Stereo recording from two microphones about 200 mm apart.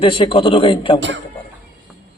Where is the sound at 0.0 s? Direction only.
25° left (ahead or behind).